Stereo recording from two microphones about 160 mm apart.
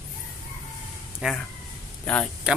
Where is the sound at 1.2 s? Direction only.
5° right (ahead or behind).